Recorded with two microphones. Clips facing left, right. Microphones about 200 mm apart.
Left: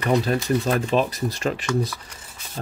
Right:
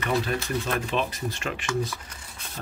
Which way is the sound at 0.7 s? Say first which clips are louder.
Left 6 dB; 35° left (ahead or behind).